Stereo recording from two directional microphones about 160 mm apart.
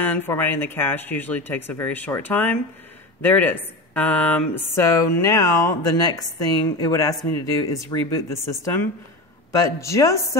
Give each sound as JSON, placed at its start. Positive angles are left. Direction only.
{"t": 0.0, "sound": "speech", "side_deg": 10}